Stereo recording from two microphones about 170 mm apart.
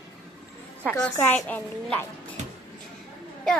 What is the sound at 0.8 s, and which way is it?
A woman's voice, 10° left (ahead or behind).